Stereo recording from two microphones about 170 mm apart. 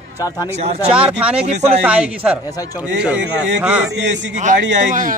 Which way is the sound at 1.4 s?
40° right (ahead or behind).